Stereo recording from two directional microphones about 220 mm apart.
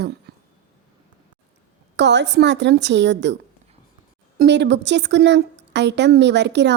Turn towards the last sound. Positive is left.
turn(degrees=-50)  # may be behind; listen again after turning